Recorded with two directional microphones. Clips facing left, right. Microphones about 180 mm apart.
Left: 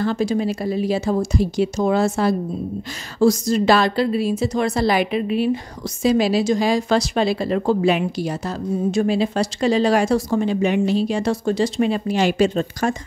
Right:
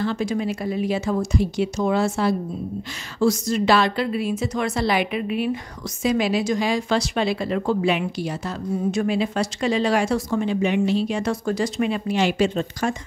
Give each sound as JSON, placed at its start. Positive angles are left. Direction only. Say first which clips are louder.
{"t": 0.0, "sound": "speech", "louder": "left 3 dB", "side_deg": 35}